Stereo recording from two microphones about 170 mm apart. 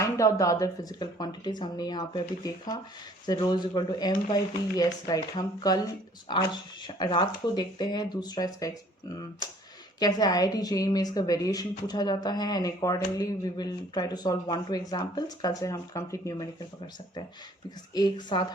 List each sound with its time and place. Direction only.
0.0 s speech: 20° left (ahead or behind)